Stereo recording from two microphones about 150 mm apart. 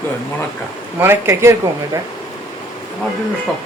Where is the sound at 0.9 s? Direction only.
15° right (ahead or behind).